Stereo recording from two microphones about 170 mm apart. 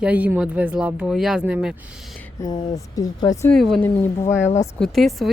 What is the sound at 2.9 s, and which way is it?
Speech, 20° left (ahead or behind).